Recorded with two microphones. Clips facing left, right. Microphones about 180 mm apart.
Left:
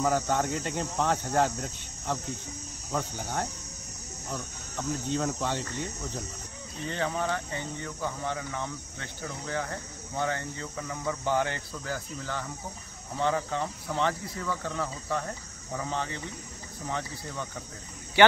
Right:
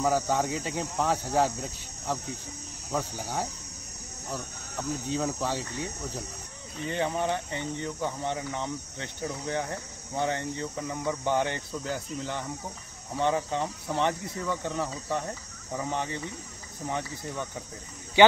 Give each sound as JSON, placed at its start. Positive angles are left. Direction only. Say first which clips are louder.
{"t": 0.0, "sound": "cricket", "louder": "right 1 dB", "side_deg": -5}
{"t": 2.9, "sound": "speech", "louder": "right 1 dB", "side_deg": -5}
{"t": 4.3, "sound": "cricket", "louder": "right 1 dB", "side_deg": -5}
{"t": 6.9, "sound": "speech", "louder": "right 2 dB", "side_deg": -15}